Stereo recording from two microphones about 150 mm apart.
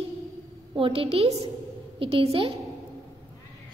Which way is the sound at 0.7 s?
35° right (ahead or behind).